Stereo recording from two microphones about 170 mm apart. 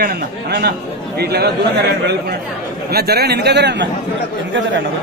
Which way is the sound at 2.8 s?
65° right (ahead or behind).